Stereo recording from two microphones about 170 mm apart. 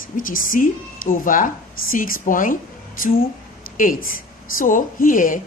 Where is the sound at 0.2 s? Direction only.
55° left (ahead or behind).